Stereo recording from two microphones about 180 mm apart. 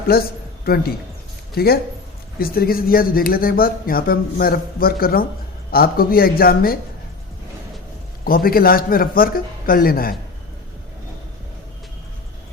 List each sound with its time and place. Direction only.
0.1 s speech: 60° left (ahead or behind)
8.2 s a man's voice: 55° left (ahead or behind)